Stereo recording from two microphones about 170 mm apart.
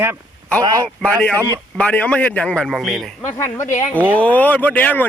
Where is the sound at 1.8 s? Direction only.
5° left (ahead or behind).